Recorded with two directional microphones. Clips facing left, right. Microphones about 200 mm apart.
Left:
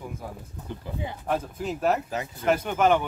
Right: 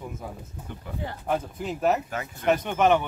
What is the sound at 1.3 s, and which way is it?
Speech, 5° right (ahead or behind).